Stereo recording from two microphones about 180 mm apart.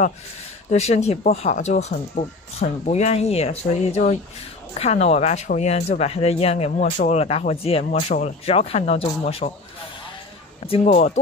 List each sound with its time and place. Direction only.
0.7 s speech: 35° left (ahead or behind)
10.7 s speech: 35° left (ahead or behind)